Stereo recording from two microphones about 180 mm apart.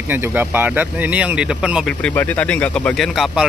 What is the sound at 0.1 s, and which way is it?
Speech, 10° right (ahead or behind).